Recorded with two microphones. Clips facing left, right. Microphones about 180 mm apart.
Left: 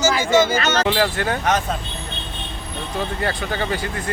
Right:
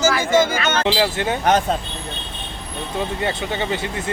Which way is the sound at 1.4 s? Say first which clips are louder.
Right 6 dB; 30° right (ahead or behind).